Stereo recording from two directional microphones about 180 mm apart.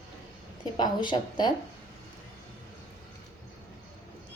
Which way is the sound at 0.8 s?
25° left (ahead or behind).